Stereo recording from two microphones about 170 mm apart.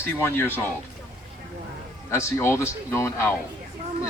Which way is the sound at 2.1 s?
15° left (ahead or behind).